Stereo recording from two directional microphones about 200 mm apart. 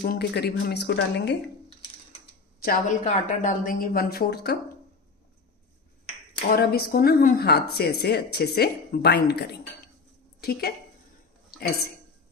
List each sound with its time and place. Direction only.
0.0 s speech: 50° left (ahead or behind)
2.6 s speech: 40° left (ahead or behind)
6.5 s speech: 50° left (ahead or behind)